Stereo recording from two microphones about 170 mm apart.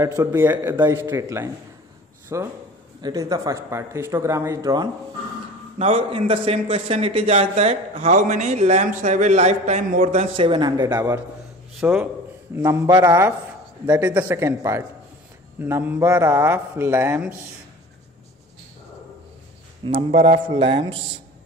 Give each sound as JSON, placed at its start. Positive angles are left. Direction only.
{"t": 0.0, "sound": "speech", "side_deg": -15}
{"t": 5.8, "sound": "a man's voice", "side_deg": -35}
{"t": 19.8, "sound": "a man's voice", "side_deg": -30}